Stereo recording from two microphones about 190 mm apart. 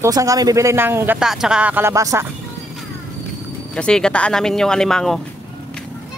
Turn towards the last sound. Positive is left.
turn(degrees=5)  # may be behind; listen again after turning